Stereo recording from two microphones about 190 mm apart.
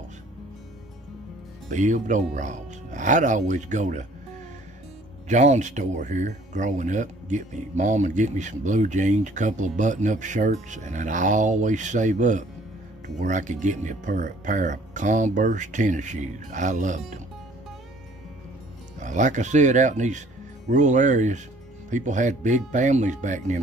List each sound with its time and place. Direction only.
1.7 s speech: 40° right (ahead or behind)
5.3 s speech: 40° right (ahead or behind)
18.9 s speech: 40° right (ahead or behind)